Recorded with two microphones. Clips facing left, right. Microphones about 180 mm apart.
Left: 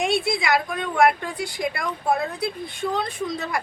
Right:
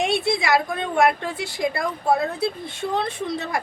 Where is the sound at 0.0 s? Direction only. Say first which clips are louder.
Right 1 dB; 25° right (ahead or behind).